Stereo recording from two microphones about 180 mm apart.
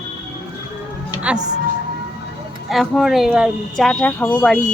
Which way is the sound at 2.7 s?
Centre (ahead or behind).